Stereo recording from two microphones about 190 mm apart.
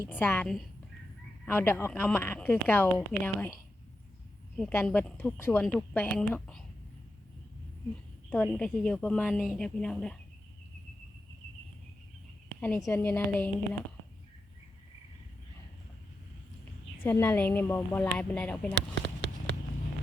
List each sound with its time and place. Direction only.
0.1 s speech: 10° left (ahead or behind)
4.7 s speech: 10° left (ahead or behind)
8.3 s a woman's voice: 5° left (ahead or behind)
12.5 s speech: 10° left (ahead or behind)
17.0 s speech: 10° left (ahead or behind)
18.7 s a sound: 65° right (ahead or behind)